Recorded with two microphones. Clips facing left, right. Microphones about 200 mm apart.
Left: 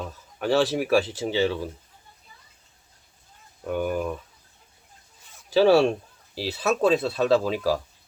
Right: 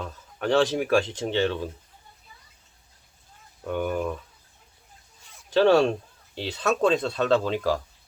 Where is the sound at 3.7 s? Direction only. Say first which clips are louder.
Left 1 dB; 5° left (ahead or behind).